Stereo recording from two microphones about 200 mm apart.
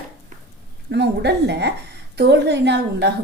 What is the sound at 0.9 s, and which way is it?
A woman's voice, 55° right (ahead or behind).